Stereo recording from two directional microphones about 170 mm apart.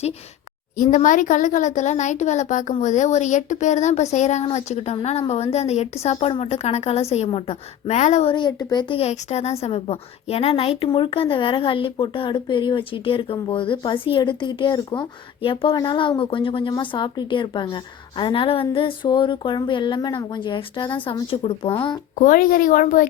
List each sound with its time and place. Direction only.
0.8 s a woman's voice: 50° left (ahead or behind)
8.3 s speech: 25° left (ahead or behind)
22.2 s speech: 55° left (ahead or behind)